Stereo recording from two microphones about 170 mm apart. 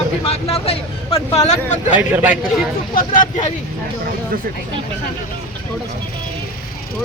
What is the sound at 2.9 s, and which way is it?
Speech, 50° left (ahead or behind).